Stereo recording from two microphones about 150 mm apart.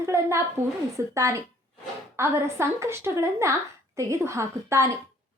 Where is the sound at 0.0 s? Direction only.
20° right (ahead or behind).